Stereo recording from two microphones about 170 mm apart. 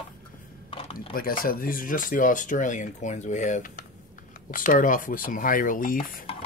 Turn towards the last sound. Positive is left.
turn(degrees=55)  # may be behind; listen again after turning